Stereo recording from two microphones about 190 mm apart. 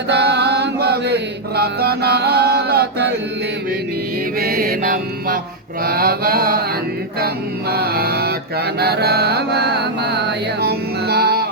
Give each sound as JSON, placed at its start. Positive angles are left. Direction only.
{"t": 0.1, "sound": "chant", "side_deg": -60}
{"t": 4.4, "sound": "mantra", "side_deg": -50}
{"t": 7.7, "sound": "mantra", "side_deg": -55}